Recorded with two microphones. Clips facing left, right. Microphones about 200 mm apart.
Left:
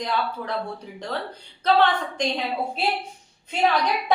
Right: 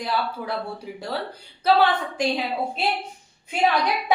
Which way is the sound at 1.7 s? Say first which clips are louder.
Right 1 dB; 10° right (ahead or behind).